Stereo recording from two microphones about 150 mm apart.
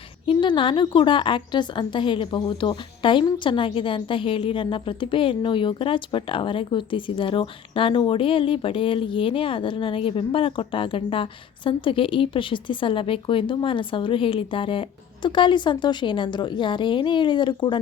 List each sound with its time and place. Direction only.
0.3 s a woman's voice: 30° left (ahead or behind)